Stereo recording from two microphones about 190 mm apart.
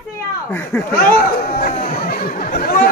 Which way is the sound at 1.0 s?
50° left (ahead or behind).